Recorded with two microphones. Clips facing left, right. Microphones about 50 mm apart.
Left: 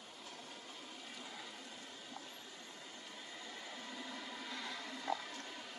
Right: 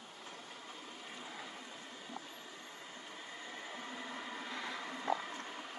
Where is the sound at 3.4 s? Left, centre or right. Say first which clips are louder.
Right 4 dB; right.